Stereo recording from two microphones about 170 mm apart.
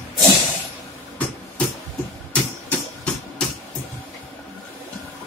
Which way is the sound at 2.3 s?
5° left (ahead or behind).